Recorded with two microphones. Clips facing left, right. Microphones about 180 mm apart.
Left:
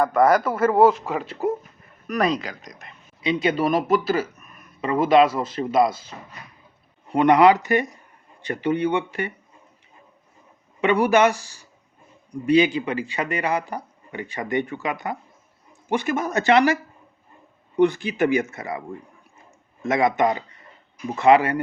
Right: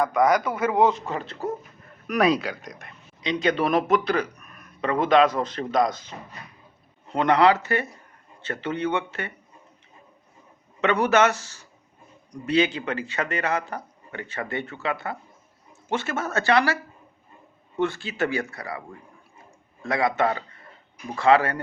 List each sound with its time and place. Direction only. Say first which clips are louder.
0.0 s speech: left 3 dB; 5° left (ahead or behind)
2.0 s speech: right 1 dB; 5° right (ahead or behind)
7.1 s speech: left 4 dB; 15° left (ahead or behind)
10.8 s speech: left 2 dB; 10° left (ahead or behind)
17.7 s speech: left 6 dB; 15° left (ahead or behind)
19.8 s speech: left 3 dB; 20° left (ahead or behind)